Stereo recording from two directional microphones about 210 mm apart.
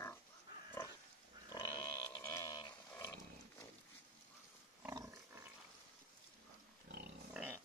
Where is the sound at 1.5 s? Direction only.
20° left (ahead or behind).